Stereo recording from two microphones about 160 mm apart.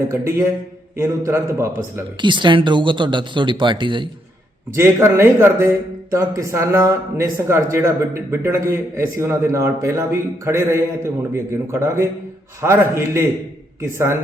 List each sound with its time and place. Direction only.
0.1 s a man's voice: 15° right (ahead or behind)
2.2 s speech: 30° right (ahead or behind)
4.7 s a man's voice: 15° right (ahead or behind)